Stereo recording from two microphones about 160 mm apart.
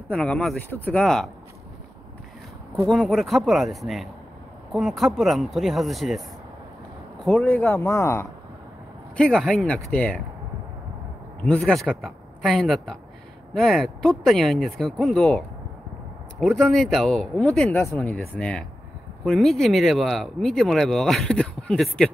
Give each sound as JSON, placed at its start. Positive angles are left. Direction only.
{"t": 0.1, "sound": "speech", "side_deg": 5}
{"t": 2.9, "sound": "speech", "side_deg": 5}
{"t": 7.2, "sound": "speech", "side_deg": 10}
{"t": 9.1, "sound": "speech", "side_deg": 5}
{"t": 11.4, "sound": "speech", "side_deg": 5}